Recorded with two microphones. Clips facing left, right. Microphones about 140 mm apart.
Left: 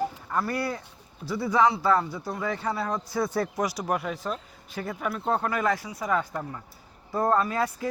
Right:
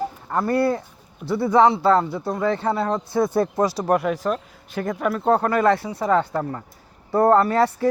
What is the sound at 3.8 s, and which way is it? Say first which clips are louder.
Speech: right 8 dB; 65° right (ahead or behind).